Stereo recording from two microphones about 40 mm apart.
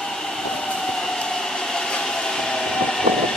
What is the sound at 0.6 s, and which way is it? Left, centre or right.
Train, centre.